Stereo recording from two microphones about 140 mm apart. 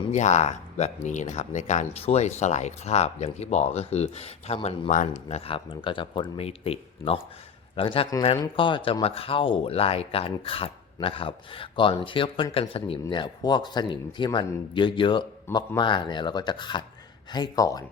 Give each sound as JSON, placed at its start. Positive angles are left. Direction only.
{"t": 0.1, "sound": "speech", "side_deg": 55}